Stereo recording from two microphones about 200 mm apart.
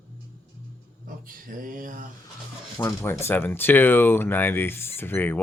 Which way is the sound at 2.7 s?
10° left (ahead or behind).